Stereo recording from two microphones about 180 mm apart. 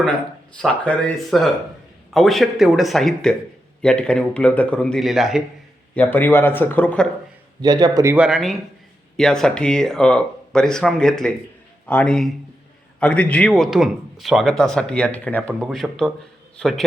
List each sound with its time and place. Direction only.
0.6 s speech: 5° left (ahead or behind)
5.9 s speech: 10° left (ahead or behind)
7.6 s a man's voice: 20° right (ahead or behind)
8.1 s speech: 5° right (ahead or behind)